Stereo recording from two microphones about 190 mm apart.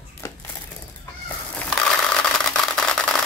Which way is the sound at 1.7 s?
5° left (ahead or behind).